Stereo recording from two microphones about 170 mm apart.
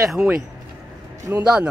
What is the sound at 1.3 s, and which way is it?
Speech, 10° right (ahead or behind).